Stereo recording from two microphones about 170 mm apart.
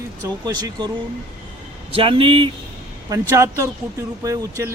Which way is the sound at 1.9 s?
30° right (ahead or behind).